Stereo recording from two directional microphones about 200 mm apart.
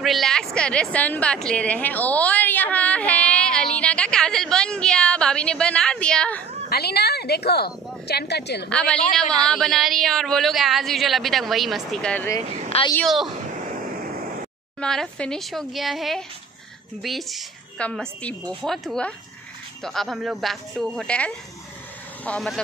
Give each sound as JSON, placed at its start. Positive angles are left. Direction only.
{"t": 0.0, "sound": "a woman's voice", "side_deg": 0}
{"t": 6.7, "sound": "a woman's voice", "side_deg": 55}
{"t": 8.6, "sound": "a woman's voice", "side_deg": 5}
{"t": 14.8, "sound": "a woman's voice", "side_deg": 5}